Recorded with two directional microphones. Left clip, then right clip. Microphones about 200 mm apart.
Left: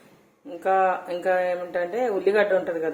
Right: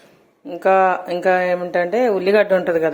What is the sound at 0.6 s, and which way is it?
Speech, 40° right (ahead or behind).